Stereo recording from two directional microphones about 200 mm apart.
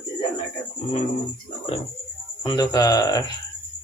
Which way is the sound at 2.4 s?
20° left (ahead or behind).